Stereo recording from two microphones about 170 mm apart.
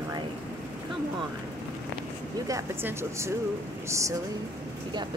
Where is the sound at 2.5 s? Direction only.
15° right (ahead or behind).